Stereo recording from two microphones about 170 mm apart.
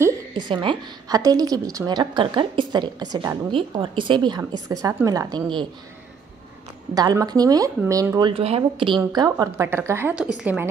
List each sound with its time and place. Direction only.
0.3 s a woman's voice: 30° right (ahead or behind)
6.9 s a woman's voice: 20° right (ahead or behind)
8.3 s a woman's voice: 35° right (ahead or behind); by 10.7 s 10° right (ahead or behind)